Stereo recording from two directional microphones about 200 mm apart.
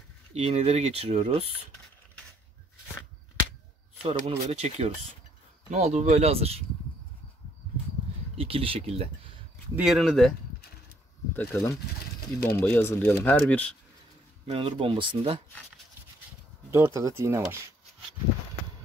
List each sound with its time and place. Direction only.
0.3 s speech: 30° right (ahead or behind)
4.0 s speech: 30° right (ahead or behind)
8.4 s speech: 30° right (ahead or behind)
9.8 s speech: centre (ahead or behind)
11.3 s speech: 15° left (ahead or behind)
14.4 s speech: 30° right (ahead or behind)
16.7 s speech: 15° right (ahead or behind)